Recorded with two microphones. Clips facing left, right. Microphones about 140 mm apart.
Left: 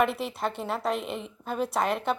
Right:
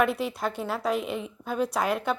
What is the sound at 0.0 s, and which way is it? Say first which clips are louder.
Speech: right 1 dB; centre (ahead or behind).